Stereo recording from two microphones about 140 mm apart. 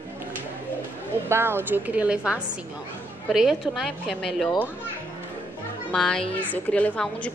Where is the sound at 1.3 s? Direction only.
15° right (ahead or behind); by 4.5 s centre (ahead or behind).